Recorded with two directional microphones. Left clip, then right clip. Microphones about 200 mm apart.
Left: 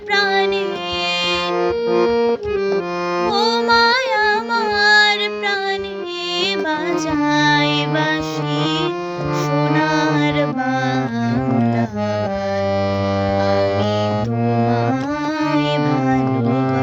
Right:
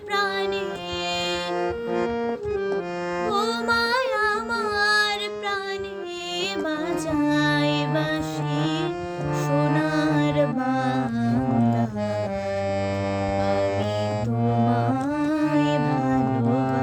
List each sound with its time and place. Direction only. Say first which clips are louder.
0.1 s music: left 8 dB; 15° right (ahead or behind)
1.6 s music: left 9 dB; 30° left (ahead or behind)
3.7 s music: left 7 dB; 15° right (ahead or behind)
7.2 s music: left 7 dB; 15° right (ahead or behind)
10.2 s music: left 4 dB; 15° right (ahead or behind)